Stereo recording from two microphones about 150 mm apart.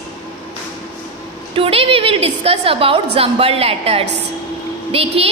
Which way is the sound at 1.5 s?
40° right (ahead or behind).